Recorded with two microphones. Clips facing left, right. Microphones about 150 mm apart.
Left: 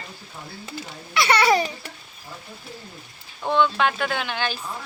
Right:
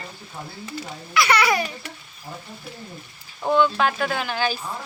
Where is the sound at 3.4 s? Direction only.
5° right (ahead or behind).